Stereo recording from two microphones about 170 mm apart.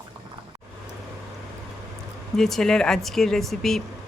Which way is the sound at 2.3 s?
Centre (ahead or behind).